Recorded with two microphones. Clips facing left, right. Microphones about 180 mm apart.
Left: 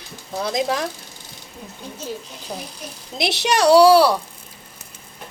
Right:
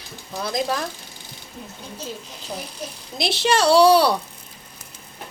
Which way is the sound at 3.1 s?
20° left (ahead or behind).